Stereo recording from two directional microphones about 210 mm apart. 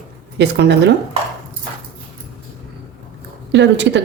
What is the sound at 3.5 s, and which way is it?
Speech, 60° right (ahead or behind).